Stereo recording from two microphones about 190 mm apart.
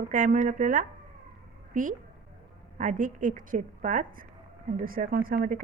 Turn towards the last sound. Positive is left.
turn(degrees=-50)  # may be behind; listen again after turning